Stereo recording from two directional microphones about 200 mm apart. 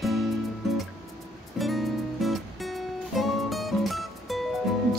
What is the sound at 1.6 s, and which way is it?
Music, centre (ahead or behind).